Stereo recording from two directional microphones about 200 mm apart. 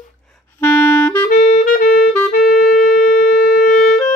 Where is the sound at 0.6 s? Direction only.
10° left (ahead or behind).